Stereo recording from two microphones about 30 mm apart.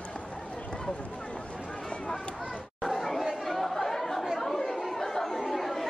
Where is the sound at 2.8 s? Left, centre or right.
Centre.